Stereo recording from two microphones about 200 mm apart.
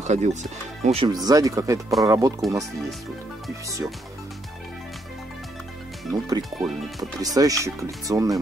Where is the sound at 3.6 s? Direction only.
15° right (ahead or behind).